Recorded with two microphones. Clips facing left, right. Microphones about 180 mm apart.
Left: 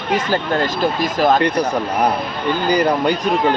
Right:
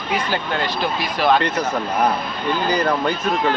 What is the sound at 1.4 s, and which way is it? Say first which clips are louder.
Speech: left 4 dB; 15° left (ahead or behind).